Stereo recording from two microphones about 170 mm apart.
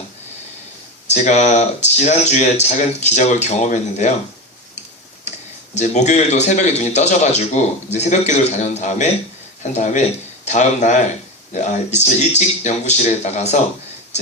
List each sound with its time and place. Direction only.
1.1 s speech: 45° left (ahead or behind)
5.7 s speech: 45° left (ahead or behind)